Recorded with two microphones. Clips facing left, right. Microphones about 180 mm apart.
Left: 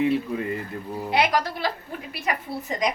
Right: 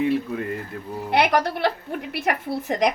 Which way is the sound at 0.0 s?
Centre (ahead or behind).